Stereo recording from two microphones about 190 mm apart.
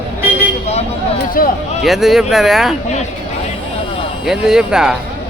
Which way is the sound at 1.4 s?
50° left (ahead or behind).